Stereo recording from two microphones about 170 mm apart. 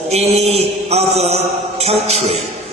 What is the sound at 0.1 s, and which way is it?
Music, 40° right (ahead or behind).